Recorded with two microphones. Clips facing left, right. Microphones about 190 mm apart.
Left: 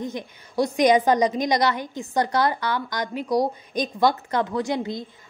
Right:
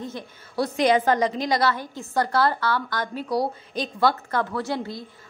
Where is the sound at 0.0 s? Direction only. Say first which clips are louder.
Left 3 dB; 15° left (ahead or behind).